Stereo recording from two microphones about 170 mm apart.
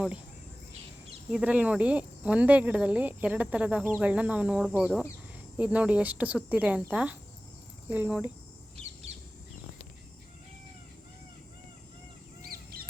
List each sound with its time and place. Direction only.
1.3 s speech: 5° right (ahead or behind)
8.7 s bird: 35° right (ahead or behind)
12.4 s a sound: 60° right (ahead or behind)